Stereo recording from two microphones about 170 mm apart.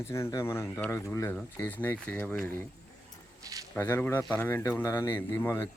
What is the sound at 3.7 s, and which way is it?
A man's voice, 15° left (ahead or behind).